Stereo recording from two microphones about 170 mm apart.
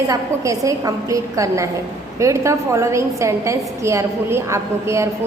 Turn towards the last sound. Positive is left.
turn(degrees=-15)  # may be behind; listen again after turning